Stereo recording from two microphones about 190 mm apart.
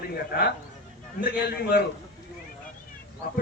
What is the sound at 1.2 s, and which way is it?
Speech, 55° left (ahead or behind).